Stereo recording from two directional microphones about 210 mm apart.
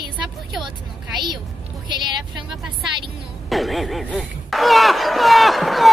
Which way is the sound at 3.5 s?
Centre (ahead or behind).